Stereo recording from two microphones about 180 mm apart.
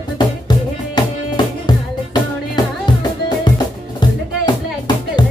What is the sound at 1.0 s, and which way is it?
Music, 25° left (ahead or behind).